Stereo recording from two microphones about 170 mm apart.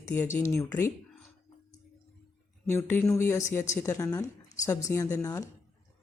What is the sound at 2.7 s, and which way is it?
A woman's voice, 15° left (ahead or behind).